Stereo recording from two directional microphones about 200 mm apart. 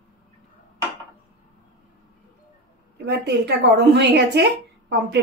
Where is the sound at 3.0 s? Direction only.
60° right (ahead or behind).